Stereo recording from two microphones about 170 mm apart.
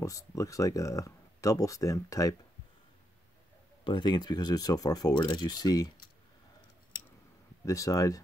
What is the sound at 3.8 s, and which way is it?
Speech, 30° left (ahead or behind).